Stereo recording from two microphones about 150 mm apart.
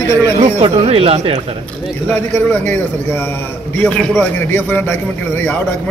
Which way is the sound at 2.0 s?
15° left (ahead or behind).